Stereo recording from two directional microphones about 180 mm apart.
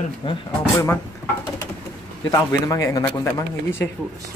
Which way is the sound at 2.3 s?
15° left (ahead or behind).